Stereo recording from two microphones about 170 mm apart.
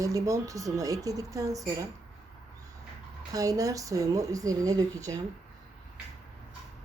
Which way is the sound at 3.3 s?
20° right (ahead or behind).